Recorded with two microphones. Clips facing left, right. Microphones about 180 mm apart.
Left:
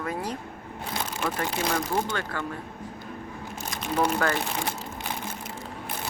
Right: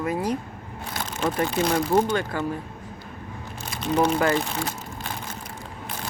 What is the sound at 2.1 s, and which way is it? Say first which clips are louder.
Speech: right 6 dB; 15° right (ahead or behind).